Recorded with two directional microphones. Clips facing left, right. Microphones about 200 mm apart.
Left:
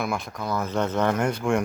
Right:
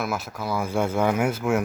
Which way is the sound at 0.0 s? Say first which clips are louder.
Even; 5° right (ahead or behind).